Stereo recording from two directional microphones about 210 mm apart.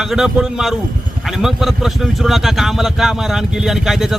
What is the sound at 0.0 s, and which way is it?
Speech, centre (ahead or behind).